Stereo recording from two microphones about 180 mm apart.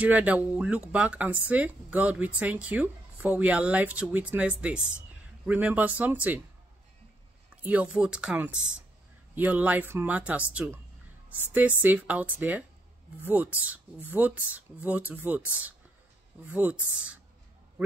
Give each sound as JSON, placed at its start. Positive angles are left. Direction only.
{"t": 0.0, "sound": "speech", "side_deg": -10}
{"t": 7.6, "sound": "speech", "side_deg": -5}
{"t": 8.5, "sound": "speech", "side_deg": -90}
{"t": 9.3, "sound": "speech", "side_deg": -10}